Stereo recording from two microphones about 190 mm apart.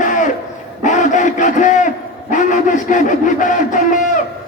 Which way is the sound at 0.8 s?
40° left (ahead or behind).